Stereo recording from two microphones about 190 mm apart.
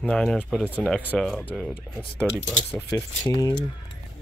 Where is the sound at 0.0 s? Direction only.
5° left (ahead or behind).